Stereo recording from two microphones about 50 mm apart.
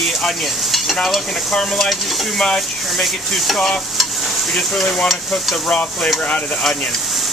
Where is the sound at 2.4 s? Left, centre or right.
Centre.